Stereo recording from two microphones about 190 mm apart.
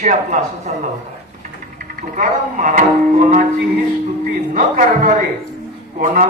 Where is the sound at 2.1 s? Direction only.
45° right (ahead or behind).